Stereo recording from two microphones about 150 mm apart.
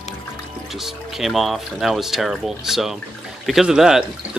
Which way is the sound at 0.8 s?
Centre (ahead or behind).